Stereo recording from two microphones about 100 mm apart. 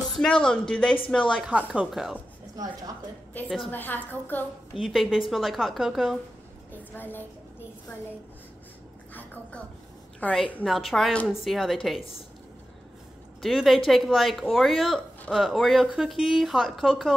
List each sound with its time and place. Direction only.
0.2 s a woman's voice: 10° left (ahead or behind)
1.4 s a woman's voice: 10° right (ahead or behind)
2.5 s a woman's voice: 40° right (ahead or behind)
3.7 s a woman's voice: 20° left (ahead or behind)
4.7 s a woman's voice: 5° right (ahead or behind)
6.7 s a child's voice: 20° left (ahead or behind)
9.1 s a sound: 15° left (ahead or behind)
10.2 s a woman's voice: 15° left (ahead or behind)
10.6 s a woman's voice: centre (ahead or behind)
13.4 s a woman's voice: centre (ahead or behind)